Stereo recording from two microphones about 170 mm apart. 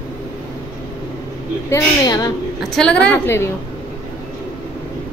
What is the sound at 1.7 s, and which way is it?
Speech, 25° left (ahead or behind).